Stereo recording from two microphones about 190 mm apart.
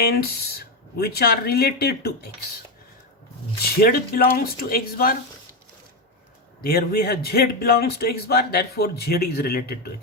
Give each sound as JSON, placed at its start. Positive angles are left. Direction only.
{"t": 0.0, "sound": "a man's voice", "side_deg": 55}
{"t": 3.6, "sound": "speech", "side_deg": 50}
{"t": 6.6, "sound": "a man's voice", "side_deg": 50}